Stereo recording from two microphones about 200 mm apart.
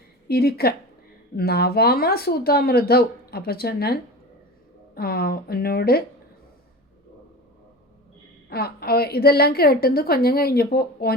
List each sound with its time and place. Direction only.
0.3 s speech: 50° left (ahead or behind)
8.4 s speech: 50° left (ahead or behind)